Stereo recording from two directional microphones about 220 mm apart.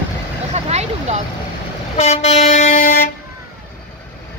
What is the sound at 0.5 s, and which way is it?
Vehicle, 30° right (ahead or behind).